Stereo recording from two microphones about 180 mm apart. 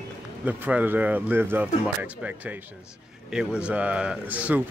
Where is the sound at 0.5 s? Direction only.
10° right (ahead or behind).